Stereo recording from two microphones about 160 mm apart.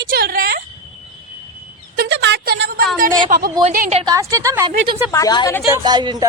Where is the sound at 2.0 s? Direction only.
90° right; by 2.8 s 75° right (ahead or behind).